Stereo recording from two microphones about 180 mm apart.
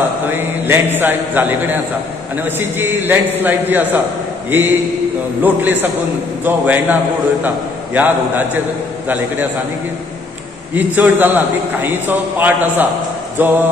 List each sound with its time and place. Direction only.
0.3 s a man's voice: 10° right (ahead or behind)
10.7 s a man's voice: 10° right (ahead or behind)